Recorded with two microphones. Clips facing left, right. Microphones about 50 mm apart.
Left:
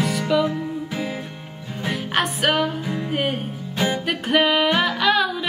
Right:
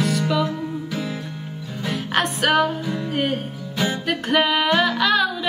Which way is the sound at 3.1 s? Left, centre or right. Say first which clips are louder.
Even; centre.